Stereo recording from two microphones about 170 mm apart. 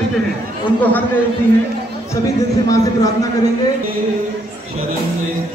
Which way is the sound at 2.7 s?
20° left (ahead or behind).